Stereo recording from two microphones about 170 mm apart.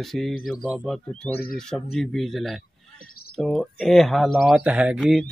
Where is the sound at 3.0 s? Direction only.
65° left (ahead or behind).